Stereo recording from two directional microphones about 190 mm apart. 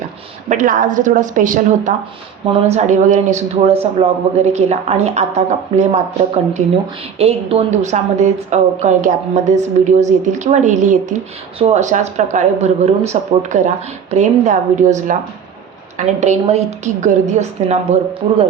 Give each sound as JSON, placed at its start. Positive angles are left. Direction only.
{"t": 0.4, "sound": "a woman's voice", "side_deg": -45}